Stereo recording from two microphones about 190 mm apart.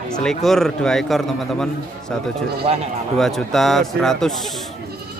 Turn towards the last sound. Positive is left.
turn(degrees=0)  # may be behind; listen again after turning